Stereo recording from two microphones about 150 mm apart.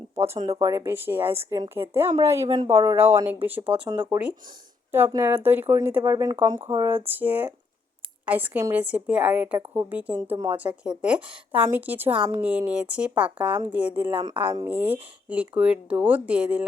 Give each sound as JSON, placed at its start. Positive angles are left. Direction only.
{"t": 0.3, "sound": "speech", "side_deg": -40}
{"t": 0.6, "sound": "speech", "side_deg": -20}
{"t": 3.8, "sound": "speech", "side_deg": -30}
{"t": 4.1, "sound": "speech", "side_deg": -10}